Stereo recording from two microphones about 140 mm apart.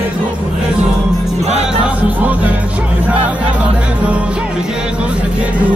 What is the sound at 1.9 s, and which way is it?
Speech, 10° right (ahead or behind).